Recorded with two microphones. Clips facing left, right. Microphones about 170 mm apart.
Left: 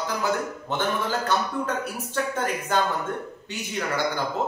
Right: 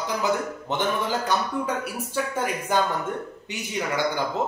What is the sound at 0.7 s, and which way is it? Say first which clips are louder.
Speech: right 1 dB; 15° right (ahead or behind).